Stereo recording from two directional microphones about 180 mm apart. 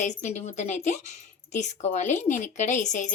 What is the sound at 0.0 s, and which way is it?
Speech, 40° left (ahead or behind).